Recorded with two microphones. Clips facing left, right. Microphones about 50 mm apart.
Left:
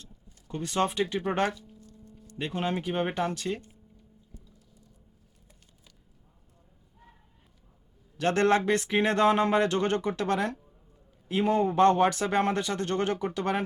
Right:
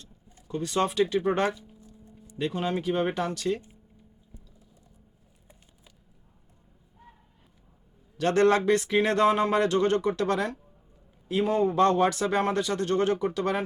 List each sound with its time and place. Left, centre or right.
0.5 s speech: left
1.5 s a sound: centre
2.6 s speech: left
8.2 s speech: left